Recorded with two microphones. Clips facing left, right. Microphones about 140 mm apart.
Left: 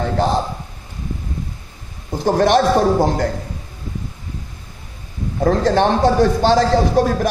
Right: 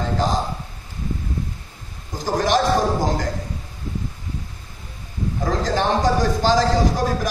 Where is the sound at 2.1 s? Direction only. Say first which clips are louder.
Left 5 dB; 60° left (ahead or behind).